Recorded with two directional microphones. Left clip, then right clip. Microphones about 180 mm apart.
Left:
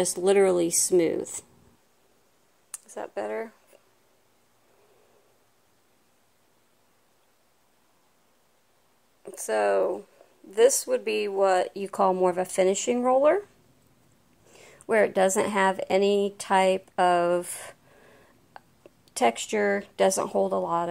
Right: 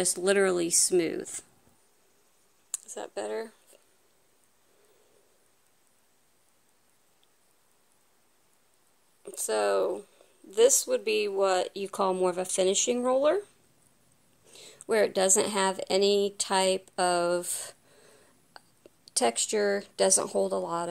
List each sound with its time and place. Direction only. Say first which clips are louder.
0.0 s speech: left 4 dB; 10° right (ahead or behind)
2.7 s speech: left 2 dB; 5° right (ahead or behind)
9.5 s speech: left 3 dB; 5° right (ahead or behind)
10.7 s speech: left 1 dB; 25° right (ahead or behind)
14.5 s a woman's voice: left 3 dB; 5° right (ahead or behind)
17.6 s a sound: left 1 dB; 10° right (ahead or behind)